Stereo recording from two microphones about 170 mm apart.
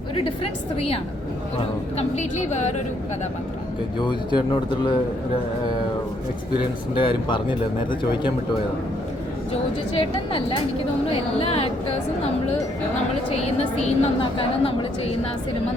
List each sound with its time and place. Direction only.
0.2 s a woman's voice: 35° left (ahead or behind)
2.0 s a woman's voice: 45° left (ahead or behind)
3.9 s speech: 25° left (ahead or behind)
6.9 s speech: 30° left (ahead or behind)
10.0 s a woman's voice: 30° left (ahead or behind)
13.3 s a woman's voice: 40° left (ahead or behind)